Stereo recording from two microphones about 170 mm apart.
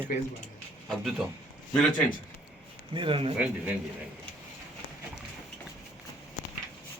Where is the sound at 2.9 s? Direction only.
30° right (ahead or behind).